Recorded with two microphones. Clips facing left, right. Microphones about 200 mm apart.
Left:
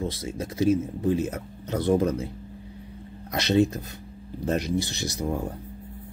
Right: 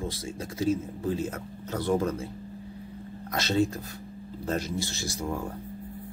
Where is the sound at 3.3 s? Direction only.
20° left (ahead or behind).